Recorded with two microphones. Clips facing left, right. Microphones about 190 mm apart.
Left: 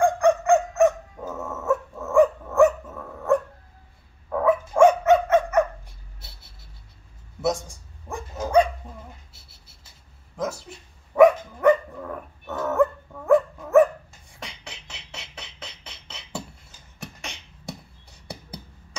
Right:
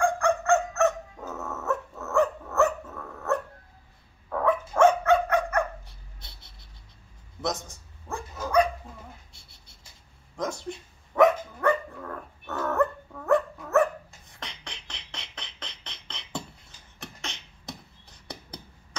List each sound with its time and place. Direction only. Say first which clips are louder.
0.0 s dog: left 5 dB; 15° left (ahead or behind)
4.3 s dog: left 4 dB; 5° left (ahead or behind)
6.2 s a sound: left 2 dB; 5° left (ahead or behind)
8.4 s dog: left 4 dB; 25° left (ahead or behind)
9.3 s scratch: left 1 dB; 5° left (ahead or behind)
10.3 s a sound: left 2 dB; 5° left (ahead or behind)
11.1 s dog: left 5 dB; 10° left (ahead or behind)
14.3 s beatboxing: left 2 dB; 10° left (ahead or behind)